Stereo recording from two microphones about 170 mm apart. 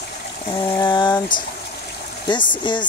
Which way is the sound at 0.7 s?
25° left (ahead or behind).